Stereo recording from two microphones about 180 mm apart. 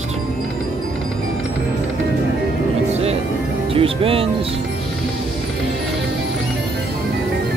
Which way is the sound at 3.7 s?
30° right (ahead or behind).